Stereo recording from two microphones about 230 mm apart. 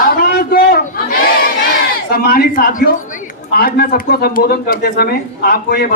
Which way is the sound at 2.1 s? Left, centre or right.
Left.